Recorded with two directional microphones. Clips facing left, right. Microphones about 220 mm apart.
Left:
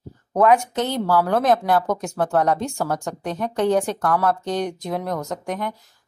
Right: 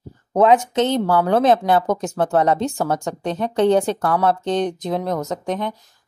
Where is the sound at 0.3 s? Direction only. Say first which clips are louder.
Right 2 dB; 20° right (ahead or behind).